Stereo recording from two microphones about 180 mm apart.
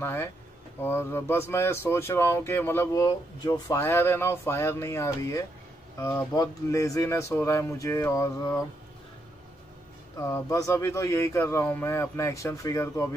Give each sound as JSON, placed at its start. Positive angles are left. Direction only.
{"t": 0.0, "sound": "speech", "side_deg": 15}
{"t": 10.1, "sound": "speech", "side_deg": 15}